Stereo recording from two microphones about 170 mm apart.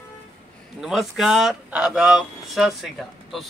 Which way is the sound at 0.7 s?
5° right (ahead or behind).